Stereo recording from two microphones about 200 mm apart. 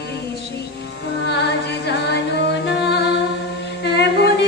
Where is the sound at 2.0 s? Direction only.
60° left (ahead or behind).